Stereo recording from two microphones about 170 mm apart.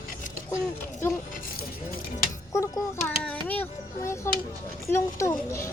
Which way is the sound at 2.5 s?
20° left (ahead or behind).